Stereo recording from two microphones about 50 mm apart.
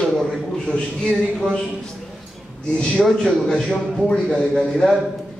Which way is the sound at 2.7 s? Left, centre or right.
Left.